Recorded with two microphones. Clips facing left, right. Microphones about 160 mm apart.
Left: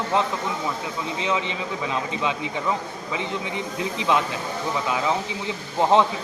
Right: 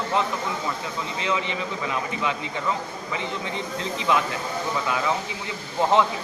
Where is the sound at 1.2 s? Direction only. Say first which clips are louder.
Even; 20° left (ahead or behind).